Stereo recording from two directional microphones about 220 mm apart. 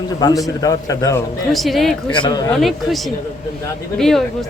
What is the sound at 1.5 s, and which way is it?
Speech, centre (ahead or behind).